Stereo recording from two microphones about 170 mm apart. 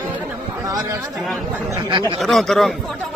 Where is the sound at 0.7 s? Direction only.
20° right (ahead or behind).